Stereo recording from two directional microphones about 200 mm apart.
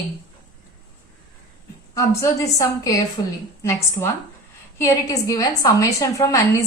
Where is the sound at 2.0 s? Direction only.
15° left (ahead or behind).